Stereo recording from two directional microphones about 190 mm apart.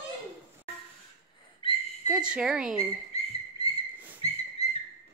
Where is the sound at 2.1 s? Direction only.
5° right (ahead or behind).